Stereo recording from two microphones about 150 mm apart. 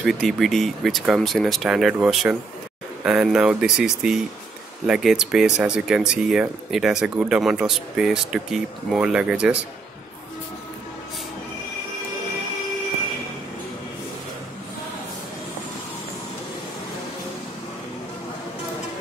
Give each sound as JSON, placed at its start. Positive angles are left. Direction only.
{"t": 0.0, "sound": "speech", "side_deg": 0}